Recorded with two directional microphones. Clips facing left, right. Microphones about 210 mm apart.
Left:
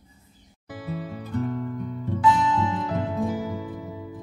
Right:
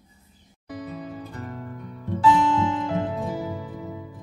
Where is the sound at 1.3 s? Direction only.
Centre (ahead or behind).